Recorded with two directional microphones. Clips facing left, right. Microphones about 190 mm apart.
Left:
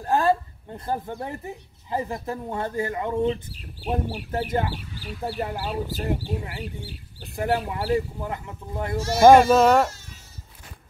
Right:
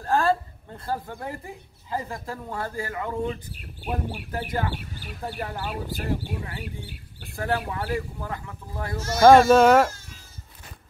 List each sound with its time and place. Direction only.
0.0 s speech: 20° left (ahead or behind)
9.5 s speech: centre (ahead or behind)